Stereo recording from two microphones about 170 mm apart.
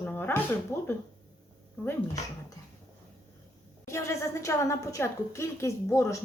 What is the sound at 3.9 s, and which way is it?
A woman's voice, 15° left (ahead or behind).